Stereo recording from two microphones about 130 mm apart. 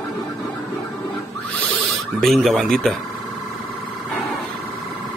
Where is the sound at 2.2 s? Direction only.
Centre (ahead or behind).